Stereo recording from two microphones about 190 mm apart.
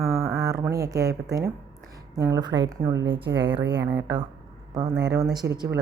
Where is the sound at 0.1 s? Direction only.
15° right (ahead or behind).